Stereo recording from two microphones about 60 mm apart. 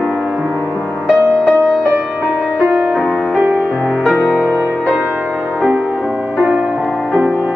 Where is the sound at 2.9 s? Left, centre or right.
Centre.